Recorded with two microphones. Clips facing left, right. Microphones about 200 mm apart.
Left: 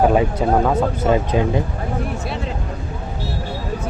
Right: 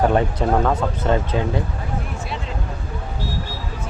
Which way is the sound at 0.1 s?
5° left (ahead or behind).